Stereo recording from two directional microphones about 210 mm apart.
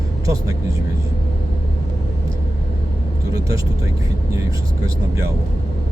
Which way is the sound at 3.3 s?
15° right (ahead or behind).